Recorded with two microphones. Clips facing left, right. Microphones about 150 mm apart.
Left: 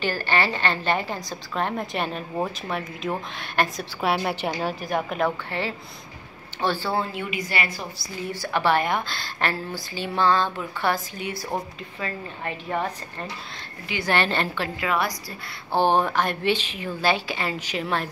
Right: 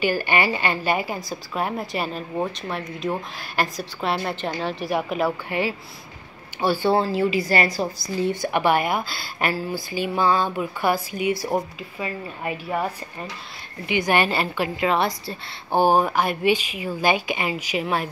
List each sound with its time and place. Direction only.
0.0 s a woman's voice: 15° right (ahead or behind); by 4.8 s 5° left (ahead or behind)
4.8 s a woman's voice: 5° right (ahead or behind)
6.9 s a woman's voice: 30° right (ahead or behind)
8.3 s a woman's voice: 20° right (ahead or behind)
14.8 s a woman's voice: 25° right (ahead or behind)
15.7 s a woman's voice: 10° right (ahead or behind)